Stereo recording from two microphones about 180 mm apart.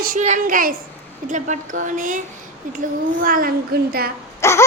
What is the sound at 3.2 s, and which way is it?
Speech, 50° right (ahead or behind).